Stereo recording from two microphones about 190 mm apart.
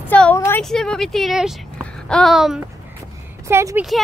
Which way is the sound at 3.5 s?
15° right (ahead or behind).